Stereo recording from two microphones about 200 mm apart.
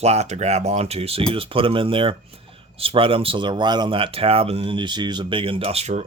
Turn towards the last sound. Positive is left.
turn(degrees=-35)  # may be behind; listen again after turning